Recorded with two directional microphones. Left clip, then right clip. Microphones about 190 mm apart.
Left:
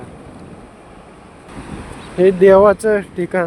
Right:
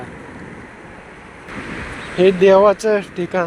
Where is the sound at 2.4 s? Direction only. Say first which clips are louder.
Left 3 dB; 30° left (ahead or behind).